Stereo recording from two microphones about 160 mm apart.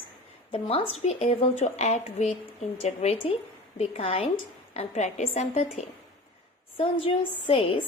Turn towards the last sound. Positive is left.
turn(degrees=35)  # may be behind; listen again after turning